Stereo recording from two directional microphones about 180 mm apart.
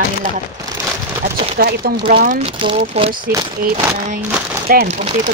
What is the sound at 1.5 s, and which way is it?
Speech, 60° right (ahead or behind).